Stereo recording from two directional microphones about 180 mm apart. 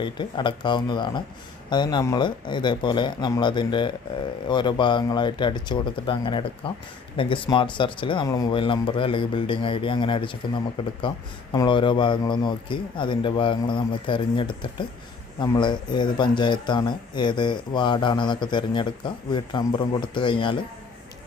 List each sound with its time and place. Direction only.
0.0 s speech: 25° left (ahead or behind)